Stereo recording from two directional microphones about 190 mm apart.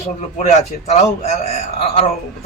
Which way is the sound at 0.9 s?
35° left (ahead or behind).